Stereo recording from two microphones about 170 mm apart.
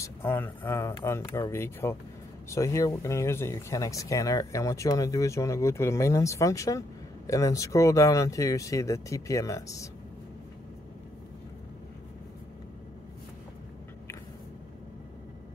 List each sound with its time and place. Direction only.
0.0 s speech: 15° left (ahead or behind)